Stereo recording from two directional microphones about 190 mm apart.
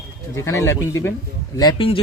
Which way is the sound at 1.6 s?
25° left (ahead or behind).